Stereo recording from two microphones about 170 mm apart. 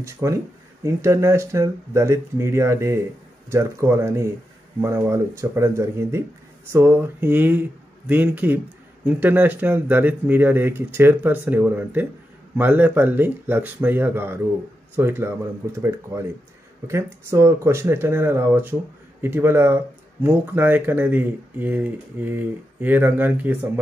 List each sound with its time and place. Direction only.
0.0 s speech: 15° right (ahead or behind)